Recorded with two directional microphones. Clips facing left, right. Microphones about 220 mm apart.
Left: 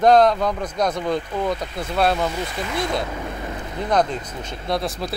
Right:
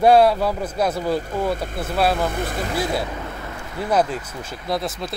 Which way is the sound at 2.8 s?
5° right (ahead or behind).